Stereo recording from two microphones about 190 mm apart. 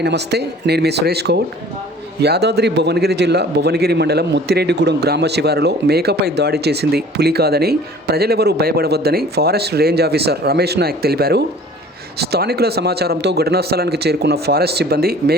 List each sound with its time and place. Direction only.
0.0 s a man's voice: 60° right (ahead or behind)